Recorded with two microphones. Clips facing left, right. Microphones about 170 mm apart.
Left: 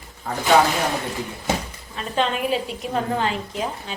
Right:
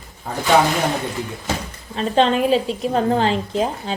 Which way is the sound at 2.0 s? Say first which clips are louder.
Right 7 dB; 30° right (ahead or behind).